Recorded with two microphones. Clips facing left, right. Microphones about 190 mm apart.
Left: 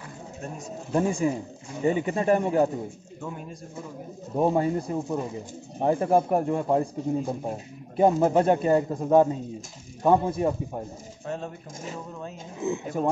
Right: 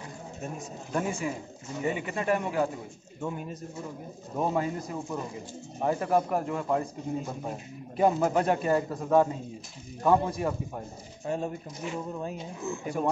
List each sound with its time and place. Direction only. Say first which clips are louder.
0.9 s a man's voice: left 6 dB; 30° left (ahead or behind)
4.4 s a man's voice: left 6 dB; 30° left (ahead or behind)
11.2 s speech: right 2 dB; 10° right (ahead or behind)
12.6 s a man's voice: left 4 dB; 20° left (ahead or behind)